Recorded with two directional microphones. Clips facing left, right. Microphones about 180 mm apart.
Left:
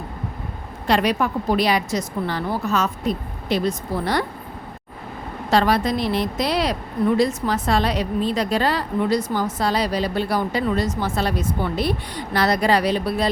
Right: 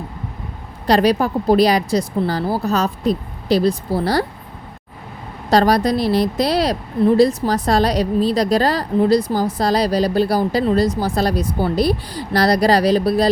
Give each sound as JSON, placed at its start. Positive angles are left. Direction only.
{"t": 0.9, "sound": "a woman's voice", "side_deg": -35}
{"t": 5.5, "sound": "a woman's voice", "side_deg": -40}